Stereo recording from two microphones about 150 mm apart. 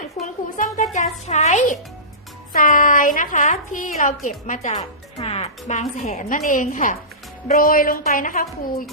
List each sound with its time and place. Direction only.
0.5 s a sound: 60° left (ahead or behind)
0.9 s a child's voice: 50° left (ahead or behind)
5.2 s a woman's voice: 40° left (ahead or behind); by 6.9 s 60° left (ahead or behind)
7.5 s a woman's voice: 75° left (ahead or behind)